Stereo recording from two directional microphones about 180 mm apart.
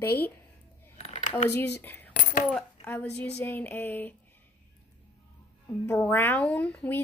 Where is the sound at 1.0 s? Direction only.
40° left (ahead or behind).